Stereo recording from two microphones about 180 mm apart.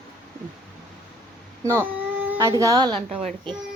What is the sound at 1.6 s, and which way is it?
A woman's voice, 15° right (ahead or behind).